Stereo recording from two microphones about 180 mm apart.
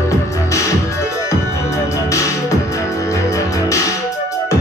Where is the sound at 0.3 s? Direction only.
15° left (ahead or behind).